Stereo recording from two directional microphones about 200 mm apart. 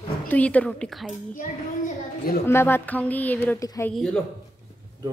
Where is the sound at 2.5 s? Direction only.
10° left (ahead or behind).